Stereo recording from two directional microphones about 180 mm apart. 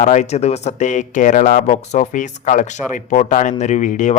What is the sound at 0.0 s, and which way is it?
A man's voice, 40° left (ahead or behind).